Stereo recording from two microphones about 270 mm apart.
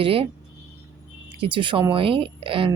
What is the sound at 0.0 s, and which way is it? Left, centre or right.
Speech, centre.